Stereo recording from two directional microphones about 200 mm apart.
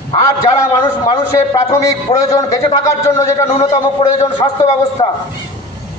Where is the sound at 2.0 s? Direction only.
30° left (ahead or behind).